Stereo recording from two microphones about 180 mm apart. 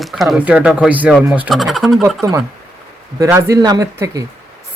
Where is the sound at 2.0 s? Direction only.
15° right (ahead or behind).